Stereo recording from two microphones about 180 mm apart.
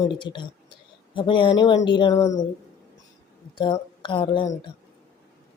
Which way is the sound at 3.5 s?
25° left (ahead or behind).